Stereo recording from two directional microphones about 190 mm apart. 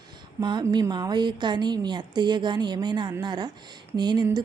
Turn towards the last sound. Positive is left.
turn(degrees=-20)  # may be behind; listen again after turning